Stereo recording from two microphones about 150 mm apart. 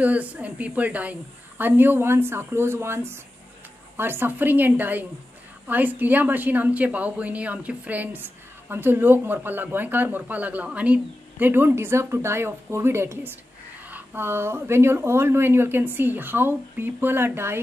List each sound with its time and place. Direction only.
0.0 s a woman's voice: 10° right (ahead or behind)